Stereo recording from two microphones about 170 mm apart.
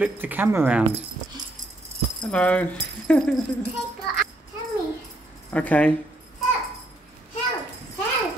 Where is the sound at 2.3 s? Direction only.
5° left (ahead or behind).